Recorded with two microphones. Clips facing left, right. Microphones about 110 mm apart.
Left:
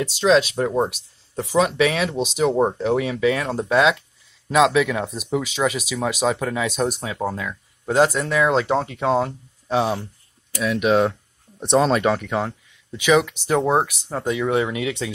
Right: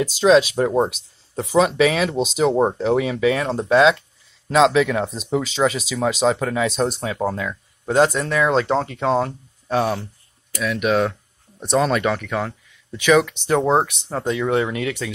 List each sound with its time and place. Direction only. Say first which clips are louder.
0.0 s speech: right 3 dB; 5° right (ahead or behind)
7.9 s speech: right 1 dB; 10° left (ahead or behind)